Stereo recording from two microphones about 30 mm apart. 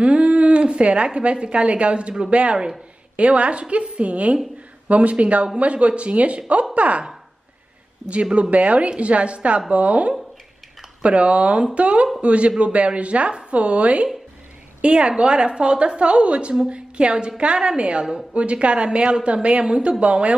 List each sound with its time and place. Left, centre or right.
0.0 s a woman's voice: right
8.1 s a woman's voice: right
14.8 s a woman's voice: right
19.2 s a woman's voice: right
19.6 s speech: right
20.0 s a woman's voice: right